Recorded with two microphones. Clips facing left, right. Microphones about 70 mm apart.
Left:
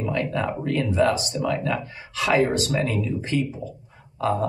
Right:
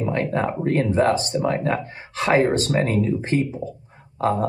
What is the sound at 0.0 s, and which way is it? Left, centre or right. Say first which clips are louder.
Speech: right 3 dB; right.